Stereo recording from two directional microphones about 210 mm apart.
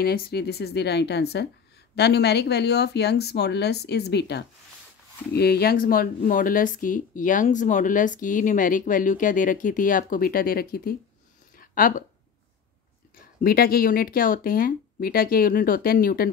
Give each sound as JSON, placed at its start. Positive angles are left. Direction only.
{"t": 0.0, "sound": "speech", "side_deg": 50}
{"t": 11.5, "sound": "a sound", "side_deg": 40}
{"t": 13.2, "sound": "speech", "side_deg": 45}